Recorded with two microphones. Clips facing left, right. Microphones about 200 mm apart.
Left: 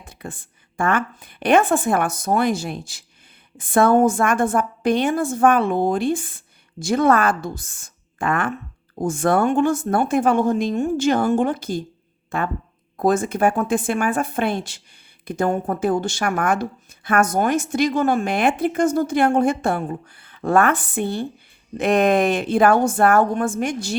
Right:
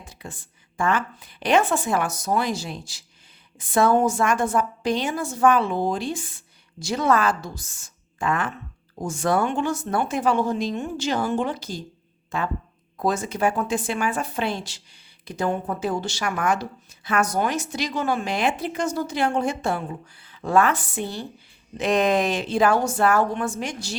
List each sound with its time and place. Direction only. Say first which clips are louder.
0.0 s a woman's voice: left 4 dB; 55° left (ahead or behind)